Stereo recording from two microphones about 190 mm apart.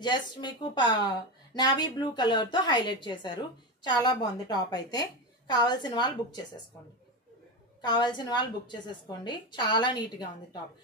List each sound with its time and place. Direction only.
0.0 s a woman's voice: 25° left (ahead or behind)
7.8 s a woman's voice: 20° left (ahead or behind)